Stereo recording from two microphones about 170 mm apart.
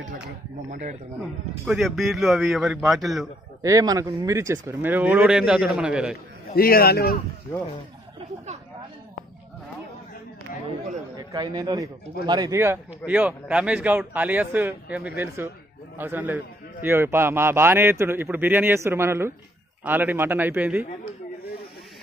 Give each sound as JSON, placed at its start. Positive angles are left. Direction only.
{"t": 0.7, "sound": "speech", "side_deg": -45}
{"t": 1.7, "sound": "speech", "side_deg": 0}
{"t": 3.6, "sound": "a man's voice", "side_deg": -20}
{"t": 6.5, "sound": "a man's voice", "side_deg": 60}
{"t": 11.1, "sound": "a man's voice", "side_deg": -25}